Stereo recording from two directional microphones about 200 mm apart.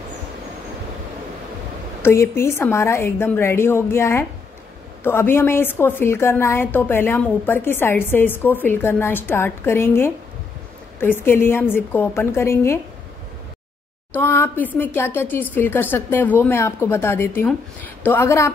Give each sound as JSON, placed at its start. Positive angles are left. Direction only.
{"t": 2.0, "sound": "a woman's voice", "side_deg": 10}
{"t": 14.1, "sound": "a woman's voice", "side_deg": 10}